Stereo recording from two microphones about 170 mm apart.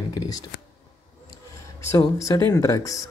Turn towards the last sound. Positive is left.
turn(degrees=20)  # may be behind; listen again after turning